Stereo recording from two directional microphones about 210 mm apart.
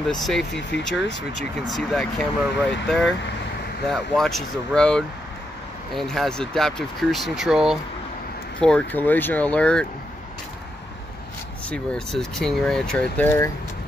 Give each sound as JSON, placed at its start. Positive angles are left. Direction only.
{"t": 0.0, "sound": "speech", "side_deg": 0}
{"t": 11.7, "sound": "speech", "side_deg": 5}